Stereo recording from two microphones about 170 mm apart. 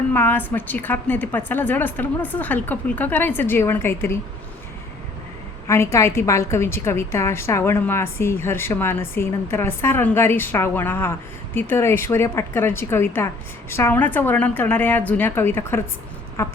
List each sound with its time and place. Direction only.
0.1 s a woman's voice: 10° left (ahead or behind)
5.6 s a woman's voice: 15° left (ahead or behind)